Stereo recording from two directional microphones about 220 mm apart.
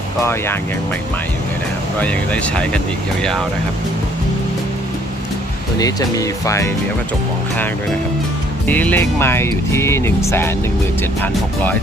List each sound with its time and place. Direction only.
0.2 s speech: 10° left (ahead or behind)
2.0 s speech: 5° left (ahead or behind)
5.8 s speech: 15° left (ahead or behind)
8.6 s speech: 5° left (ahead or behind)